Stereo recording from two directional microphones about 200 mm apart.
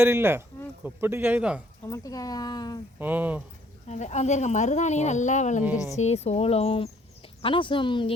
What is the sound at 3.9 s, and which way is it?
Speech, 35° left (ahead or behind).